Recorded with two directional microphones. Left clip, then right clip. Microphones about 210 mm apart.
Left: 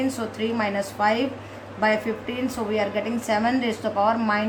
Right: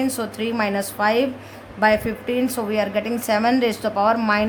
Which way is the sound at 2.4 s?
55° right (ahead or behind).